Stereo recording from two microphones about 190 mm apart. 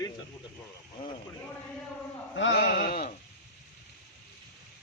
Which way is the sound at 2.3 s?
75° left (ahead or behind).